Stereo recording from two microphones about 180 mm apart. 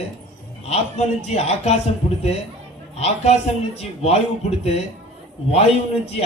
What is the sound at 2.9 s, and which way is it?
A man's voice, 35° left (ahead or behind).